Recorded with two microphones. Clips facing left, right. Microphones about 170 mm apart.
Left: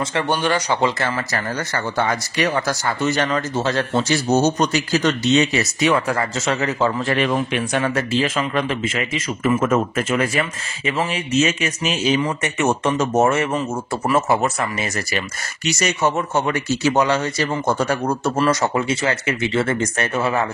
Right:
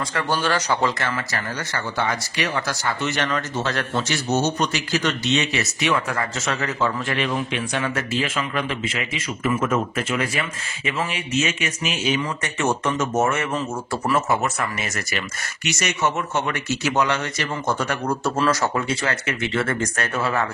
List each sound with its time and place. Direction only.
0.1 s speech: 15° left (ahead or behind)
0.8 s speech: 30° left (ahead or behind)
1.3 s speech: 45° left (ahead or behind)
10.9 s speech: 35° left (ahead or behind)
12.2 s speech: 20° left (ahead or behind)
12.9 s speech: 35° left (ahead or behind)
18.2 s speech: 20° left (ahead or behind)